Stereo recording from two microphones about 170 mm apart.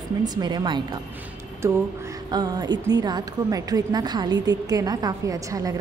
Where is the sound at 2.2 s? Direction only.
25° right (ahead or behind).